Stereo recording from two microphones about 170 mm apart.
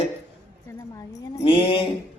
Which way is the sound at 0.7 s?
20° left (ahead or behind).